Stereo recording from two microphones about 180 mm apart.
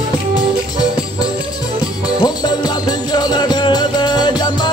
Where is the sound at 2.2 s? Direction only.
20° left (ahead or behind).